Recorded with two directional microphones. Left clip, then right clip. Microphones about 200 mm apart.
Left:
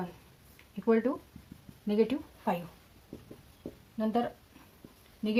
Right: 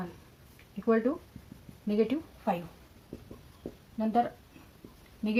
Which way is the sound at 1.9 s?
40° left (ahead or behind).